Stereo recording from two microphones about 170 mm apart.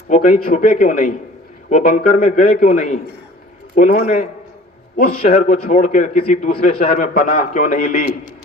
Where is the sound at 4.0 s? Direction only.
40° left (ahead or behind).